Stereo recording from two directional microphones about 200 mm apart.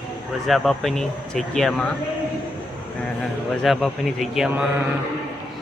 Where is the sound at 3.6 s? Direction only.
Centre (ahead or behind).